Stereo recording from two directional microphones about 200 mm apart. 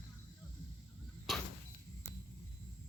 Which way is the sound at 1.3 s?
Centre (ahead or behind).